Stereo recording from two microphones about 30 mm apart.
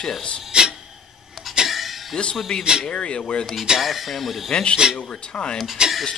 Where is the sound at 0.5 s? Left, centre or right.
Right.